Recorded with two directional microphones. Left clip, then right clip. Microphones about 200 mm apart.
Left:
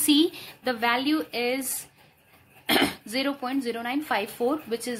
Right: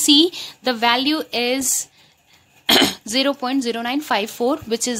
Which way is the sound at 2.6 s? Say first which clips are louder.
Right 8 dB; 45° right (ahead or behind).